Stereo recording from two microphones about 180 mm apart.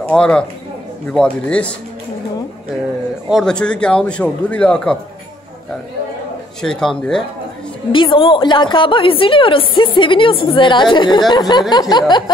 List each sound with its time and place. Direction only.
0.0 s speech: 5° left (ahead or behind)
3.3 s a man's voice: centre (ahead or behind)
6.6 s a man's voice: 5° left (ahead or behind)
7.9 s a woman's voice: 30° left (ahead or behind)